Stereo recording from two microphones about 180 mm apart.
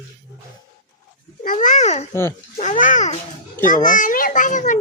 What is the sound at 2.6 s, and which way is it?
A child's voice, 45° left (ahead or behind).